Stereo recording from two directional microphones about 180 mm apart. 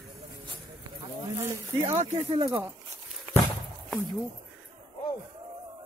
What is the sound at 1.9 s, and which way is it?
Speech, 35° right (ahead or behind).